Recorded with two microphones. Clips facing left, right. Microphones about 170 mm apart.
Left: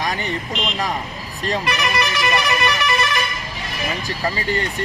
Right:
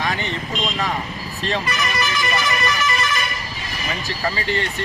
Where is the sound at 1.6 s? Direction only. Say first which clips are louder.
Left 2 dB; 65° left (ahead or behind).